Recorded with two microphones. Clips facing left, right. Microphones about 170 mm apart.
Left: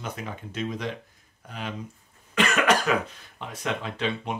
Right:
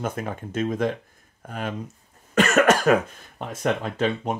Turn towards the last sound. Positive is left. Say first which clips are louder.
# right 5 dB
turn(degrees=-45)  # may be behind; listen again after turning